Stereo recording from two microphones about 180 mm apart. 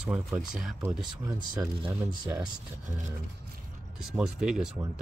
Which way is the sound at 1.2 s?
20° right (ahead or behind).